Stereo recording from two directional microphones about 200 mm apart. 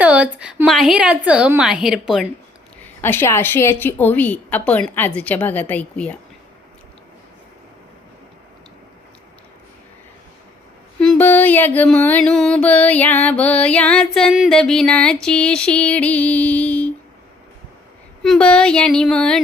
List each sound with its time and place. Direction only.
0.0 s a woman's voice: 5° right (ahead or behind)
2.8 s mantra: 10° left (ahead or behind)
11.0 s mantra: 5° left (ahead or behind)
18.2 s a woman's voice: 5° left (ahead or behind)